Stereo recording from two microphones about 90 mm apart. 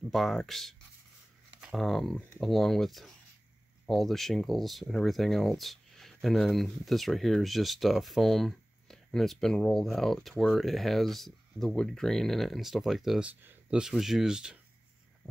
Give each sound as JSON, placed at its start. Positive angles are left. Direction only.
{"t": 0.1, "sound": "speech", "side_deg": 0}
{"t": 13.2, "sound": "speech", "side_deg": -20}
{"t": 13.7, "sound": "speech", "side_deg": -5}